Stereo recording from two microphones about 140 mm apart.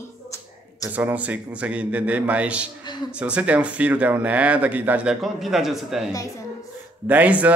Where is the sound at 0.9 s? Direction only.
10° right (ahead or behind).